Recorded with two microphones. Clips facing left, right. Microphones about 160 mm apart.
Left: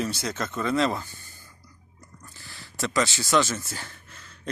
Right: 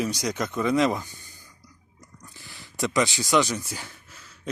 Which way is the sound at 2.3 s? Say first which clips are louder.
Right 3 dB; 20° right (ahead or behind).